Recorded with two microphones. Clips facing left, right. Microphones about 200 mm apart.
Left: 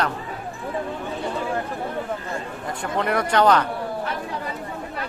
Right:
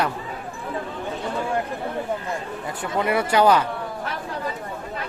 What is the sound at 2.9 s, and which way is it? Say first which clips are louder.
Speech: right 1 dB; 5° right (ahead or behind).